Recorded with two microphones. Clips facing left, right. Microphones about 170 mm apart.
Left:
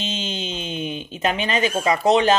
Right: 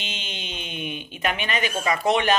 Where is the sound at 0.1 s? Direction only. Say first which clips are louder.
Left 8 dB; 25° left (ahead or behind).